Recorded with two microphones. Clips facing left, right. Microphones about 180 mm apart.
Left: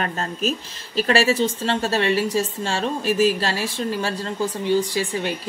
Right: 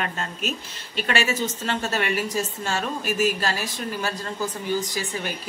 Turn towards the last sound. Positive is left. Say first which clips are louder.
# left 6 dB
turn(degrees=30)  # may be behind; listen again after turning